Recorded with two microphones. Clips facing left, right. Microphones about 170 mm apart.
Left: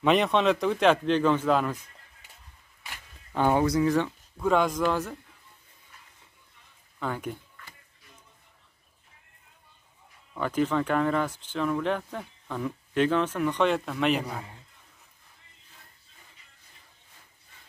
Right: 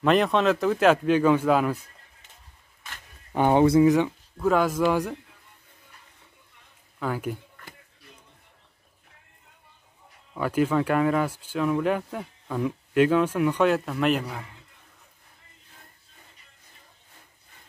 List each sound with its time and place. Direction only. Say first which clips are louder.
0.0 s a man's voice: right 2 dB; centre (ahead or behind)
3.3 s speech: right 5 dB; 20° right (ahead or behind)
4.4 s a man's voice: right 2 dB; 5° right (ahead or behind)
7.0 s a man's voice: right 3 dB; 5° right (ahead or behind)
10.3 s speech: right 3 dB; 5° right (ahead or behind)